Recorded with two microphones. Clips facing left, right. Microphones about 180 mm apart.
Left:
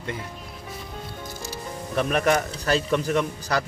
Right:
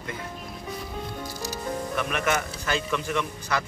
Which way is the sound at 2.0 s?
35° left (ahead or behind).